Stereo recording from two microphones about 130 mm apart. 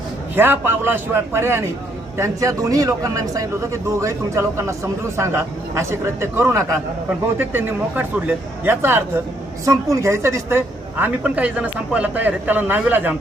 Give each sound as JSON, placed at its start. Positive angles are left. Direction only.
{"t": 0.3, "sound": "a man's voice", "side_deg": -15}
{"t": 11.0, "sound": "a man's voice", "side_deg": -10}